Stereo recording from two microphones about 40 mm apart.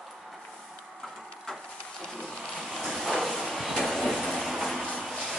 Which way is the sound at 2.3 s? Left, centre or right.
Left.